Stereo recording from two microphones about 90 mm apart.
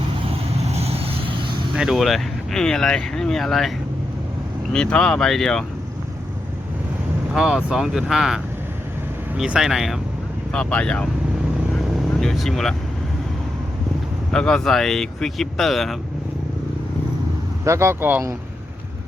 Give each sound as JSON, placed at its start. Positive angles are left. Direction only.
{"t": 0.9, "sound": "vehicle", "side_deg": -90}
{"t": 1.7, "sound": "speech", "side_deg": -5}
{"t": 4.7, "sound": "speech", "side_deg": 10}
{"t": 7.3, "sound": "speech", "side_deg": -5}
{"t": 9.4, "sound": "speech", "side_deg": -5}
{"t": 10.5, "sound": "speech", "side_deg": 15}
{"t": 12.2, "sound": "speech", "side_deg": 5}
{"t": 14.3, "sound": "speech", "side_deg": 10}
{"t": 17.7, "sound": "speech", "side_deg": -30}